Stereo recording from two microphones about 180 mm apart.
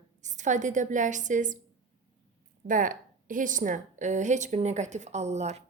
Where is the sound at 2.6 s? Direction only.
45° right (ahead or behind).